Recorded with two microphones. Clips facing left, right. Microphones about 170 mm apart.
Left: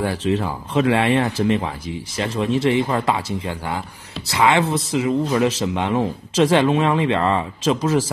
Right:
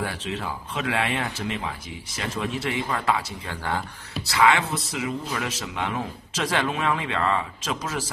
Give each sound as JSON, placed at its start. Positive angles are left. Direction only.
{"t": 0.0, "sound": "speech", "side_deg": 35}
{"t": 3.4, "sound": "speech", "side_deg": 10}
{"t": 4.3, "sound": "speech", "side_deg": 25}